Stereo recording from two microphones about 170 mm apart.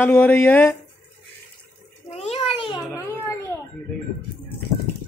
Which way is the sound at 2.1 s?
35° left (ahead or behind).